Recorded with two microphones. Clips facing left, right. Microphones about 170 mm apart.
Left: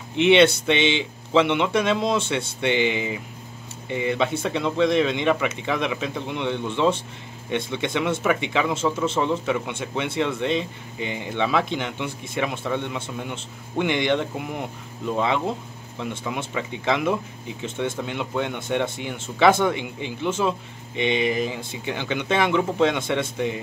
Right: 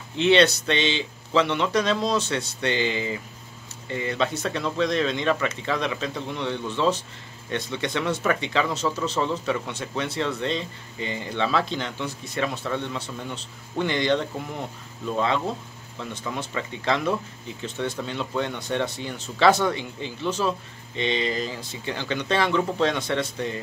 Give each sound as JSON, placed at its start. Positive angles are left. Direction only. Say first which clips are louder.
{"t": 0.1, "sound": "speech", "louder": "left 3 dB", "side_deg": 20}